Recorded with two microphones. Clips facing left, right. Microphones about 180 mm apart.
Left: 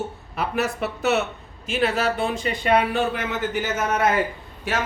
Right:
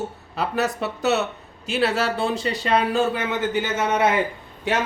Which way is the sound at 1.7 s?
30° right (ahead or behind).